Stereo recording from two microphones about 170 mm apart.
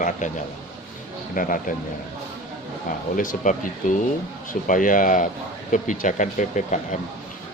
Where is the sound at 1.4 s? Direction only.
55° left (ahead or behind).